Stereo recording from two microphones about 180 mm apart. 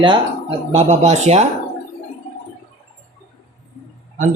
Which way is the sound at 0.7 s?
40° right (ahead or behind).